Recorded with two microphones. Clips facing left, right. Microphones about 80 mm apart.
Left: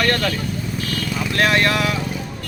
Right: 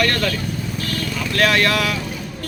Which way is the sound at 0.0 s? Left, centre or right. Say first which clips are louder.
Even; left.